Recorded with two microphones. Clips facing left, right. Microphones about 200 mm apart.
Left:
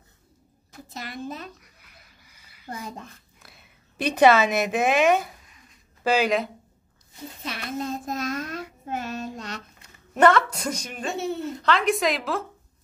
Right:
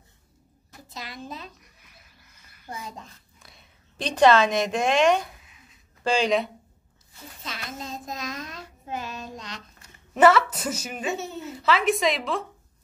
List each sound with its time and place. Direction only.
0.9 s a child's voice: 50° left (ahead or behind)
2.2 s a sound: 10° left (ahead or behind)
2.7 s a child's voice: 60° left (ahead or behind)
3.4 s a woman's voice: 5° left (ahead or behind)
5.4 s a sound: 5° right (ahead or behind)
7.4 s child singing: 60° left (ahead or behind)
10.1 s a woman's voice: 5° right (ahead or behind)